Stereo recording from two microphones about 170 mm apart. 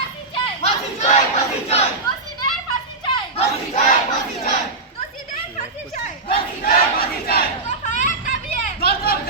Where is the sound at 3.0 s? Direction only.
30° left (ahead or behind).